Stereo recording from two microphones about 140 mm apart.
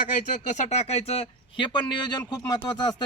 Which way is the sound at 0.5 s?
55° left (ahead or behind).